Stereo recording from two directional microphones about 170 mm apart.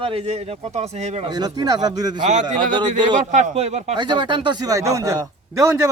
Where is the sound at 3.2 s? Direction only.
45° right (ahead or behind).